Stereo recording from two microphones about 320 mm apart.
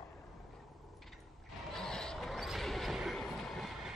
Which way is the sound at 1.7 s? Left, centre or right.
Centre.